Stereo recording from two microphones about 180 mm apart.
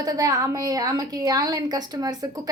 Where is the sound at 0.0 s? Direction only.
20° right (ahead or behind).